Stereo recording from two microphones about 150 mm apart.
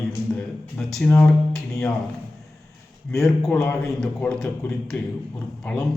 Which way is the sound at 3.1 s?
Centre (ahead or behind).